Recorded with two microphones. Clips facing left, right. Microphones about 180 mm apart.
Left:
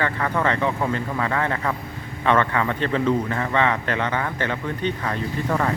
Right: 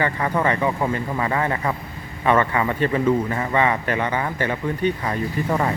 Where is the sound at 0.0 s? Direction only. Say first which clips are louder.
Right 1 dB; 10° right (ahead or behind).